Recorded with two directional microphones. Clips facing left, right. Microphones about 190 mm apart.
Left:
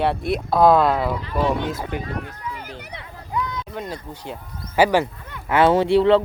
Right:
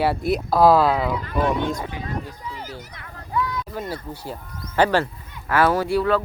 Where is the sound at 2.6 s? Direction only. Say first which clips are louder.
Even; 65° left (ahead or behind).